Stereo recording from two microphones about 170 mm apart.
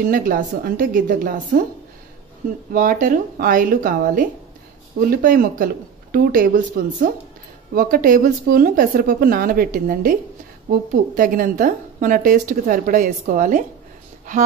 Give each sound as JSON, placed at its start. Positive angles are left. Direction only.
{"t": 0.0, "sound": "speech", "side_deg": -55}
{"t": 2.7, "sound": "a woman's voice", "side_deg": -50}
{"t": 7.7, "sound": "a woman's voice", "side_deg": -55}